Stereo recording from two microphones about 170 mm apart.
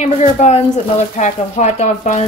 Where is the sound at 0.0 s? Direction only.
45° left (ahead or behind).